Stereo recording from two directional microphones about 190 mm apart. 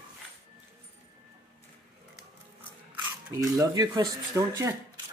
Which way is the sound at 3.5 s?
20° right (ahead or behind).